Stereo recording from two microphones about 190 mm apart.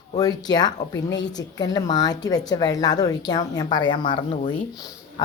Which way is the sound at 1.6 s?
20° left (ahead or behind).